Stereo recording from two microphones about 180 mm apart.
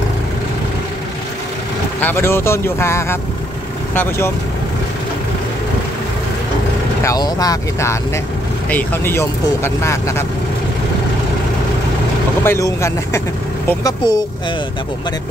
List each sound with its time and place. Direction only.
2.0 s speech: 10° left (ahead or behind)
7.0 s speech: 20° left (ahead or behind)
12.4 s speech: 15° left (ahead or behind)